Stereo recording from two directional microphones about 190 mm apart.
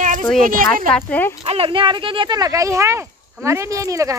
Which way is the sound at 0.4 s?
45° right (ahead or behind).